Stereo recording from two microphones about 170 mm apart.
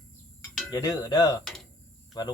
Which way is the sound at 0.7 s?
25° left (ahead or behind).